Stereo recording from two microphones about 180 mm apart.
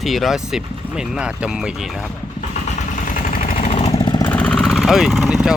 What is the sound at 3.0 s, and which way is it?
Vehicle, 45° left (ahead or behind).